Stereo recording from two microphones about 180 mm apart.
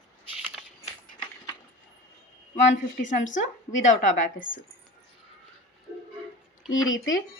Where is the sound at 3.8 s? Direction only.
45° left (ahead or behind).